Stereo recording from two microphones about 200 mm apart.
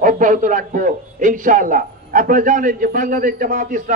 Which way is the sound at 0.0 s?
40° right (ahead or behind).